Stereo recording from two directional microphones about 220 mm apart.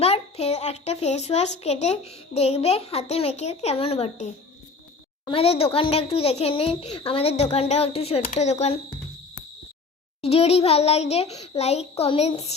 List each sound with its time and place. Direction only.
0.0 s a child's voice: 30° left (ahead or behind)
10.2 s a child's voice: 30° left (ahead or behind)